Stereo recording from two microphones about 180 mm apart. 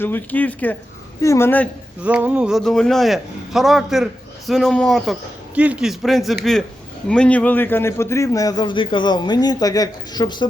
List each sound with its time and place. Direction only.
0.0 s speech: 10° left (ahead or behind)
2.0 s a man's voice: 10° right (ahead or behind); by 10.4 s 25° left (ahead or behind)